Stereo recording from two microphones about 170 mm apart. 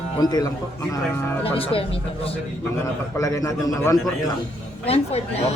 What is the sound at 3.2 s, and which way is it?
Speech, 20° left (ahead or behind).